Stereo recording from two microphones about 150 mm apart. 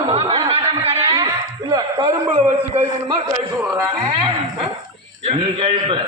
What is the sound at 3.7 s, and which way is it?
Speech, 35° right (ahead or behind).